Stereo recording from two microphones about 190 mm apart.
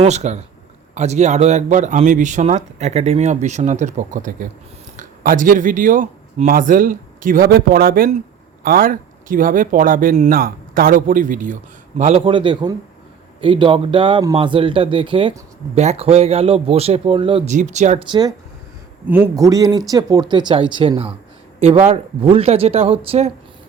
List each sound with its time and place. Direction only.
0.0 s speech: 35° right (ahead or behind)
18.1 s speech: 20° right (ahead or behind)